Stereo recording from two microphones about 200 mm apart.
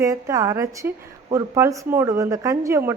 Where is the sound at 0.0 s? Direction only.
15° right (ahead or behind).